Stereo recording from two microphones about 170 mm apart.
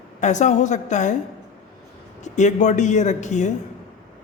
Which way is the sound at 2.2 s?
45° left (ahead or behind).